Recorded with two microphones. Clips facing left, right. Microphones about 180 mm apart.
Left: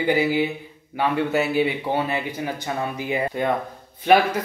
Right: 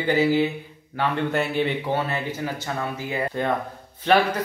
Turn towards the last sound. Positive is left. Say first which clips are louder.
# left 2 dB
turn(degrees=10)  # may be behind; listen again after turning